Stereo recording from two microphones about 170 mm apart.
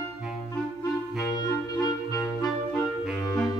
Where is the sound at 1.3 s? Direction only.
20° left (ahead or behind).